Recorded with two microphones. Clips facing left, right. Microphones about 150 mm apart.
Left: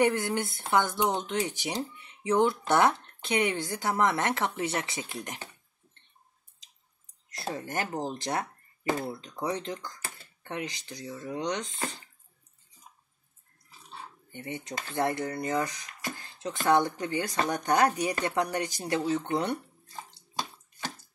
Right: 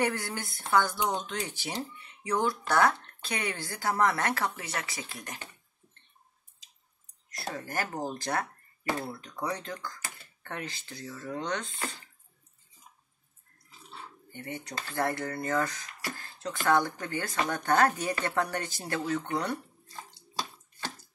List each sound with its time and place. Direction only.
0.0 s speech: 20° left (ahead or behind)
7.3 s speech: 25° left (ahead or behind)
14.3 s speech: 20° left (ahead or behind)